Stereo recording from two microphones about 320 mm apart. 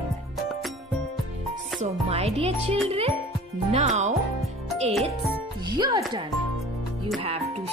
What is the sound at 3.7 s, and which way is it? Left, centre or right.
Speech, right.